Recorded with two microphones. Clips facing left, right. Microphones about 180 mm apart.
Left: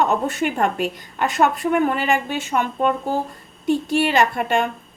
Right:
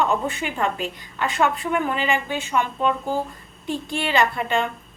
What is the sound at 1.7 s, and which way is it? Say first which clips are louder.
A woman's voice: left 4 dB; 50° left (ahead or behind).